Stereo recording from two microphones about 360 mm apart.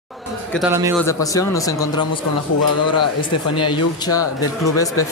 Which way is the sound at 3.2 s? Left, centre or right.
Centre.